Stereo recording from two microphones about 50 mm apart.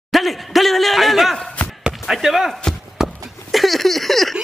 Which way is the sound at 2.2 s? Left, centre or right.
Centre.